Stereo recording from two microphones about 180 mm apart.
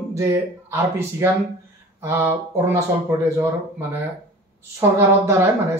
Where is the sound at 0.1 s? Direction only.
15° right (ahead or behind).